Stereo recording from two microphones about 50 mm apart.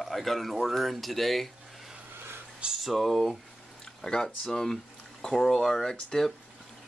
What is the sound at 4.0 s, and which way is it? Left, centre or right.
Speech, centre.